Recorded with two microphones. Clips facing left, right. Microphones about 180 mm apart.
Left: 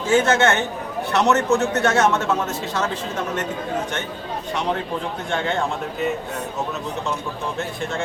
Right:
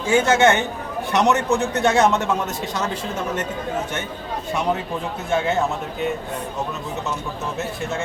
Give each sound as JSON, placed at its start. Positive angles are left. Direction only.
{"t": 0.0, "sound": "a man's voice", "side_deg": -10}
{"t": 5.3, "sound": "speech", "side_deg": -5}
{"t": 7.6, "sound": "speech", "side_deg": 0}